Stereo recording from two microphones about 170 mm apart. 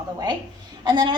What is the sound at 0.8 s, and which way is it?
Speech, 25° right (ahead or behind).